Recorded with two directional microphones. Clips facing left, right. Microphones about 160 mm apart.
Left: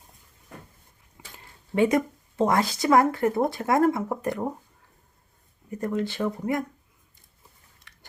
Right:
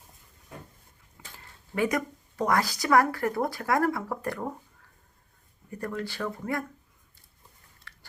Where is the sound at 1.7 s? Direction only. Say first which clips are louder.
Left 6 dB; 25° left (ahead or behind).